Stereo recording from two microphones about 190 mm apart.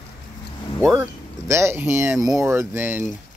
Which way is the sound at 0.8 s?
10° right (ahead or behind).